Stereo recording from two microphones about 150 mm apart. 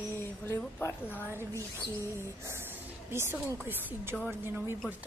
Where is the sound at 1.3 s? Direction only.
15° right (ahead or behind).